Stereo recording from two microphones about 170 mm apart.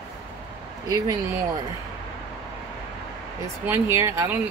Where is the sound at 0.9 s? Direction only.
20° right (ahead or behind).